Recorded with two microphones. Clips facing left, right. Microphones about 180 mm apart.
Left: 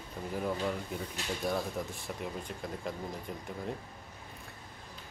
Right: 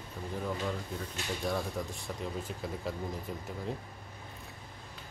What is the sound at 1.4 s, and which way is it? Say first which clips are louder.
Speech: left 1 dB; centre (ahead or behind).